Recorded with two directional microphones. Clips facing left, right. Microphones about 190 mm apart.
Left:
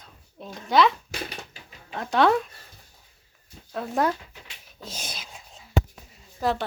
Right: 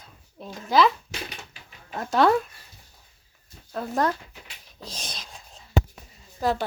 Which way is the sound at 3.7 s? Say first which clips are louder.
Even; centre (ahead or behind).